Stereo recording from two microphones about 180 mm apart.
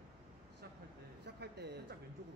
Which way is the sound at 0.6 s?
60° right (ahead or behind).